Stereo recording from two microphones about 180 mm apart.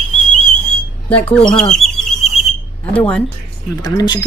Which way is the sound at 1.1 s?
5° left (ahead or behind).